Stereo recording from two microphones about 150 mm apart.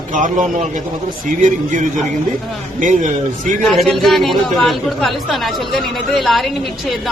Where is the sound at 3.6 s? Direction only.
Centre (ahead or behind).